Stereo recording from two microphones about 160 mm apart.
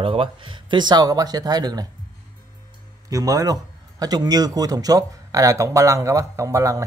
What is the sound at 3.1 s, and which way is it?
A man's voice, 20° right (ahead or behind).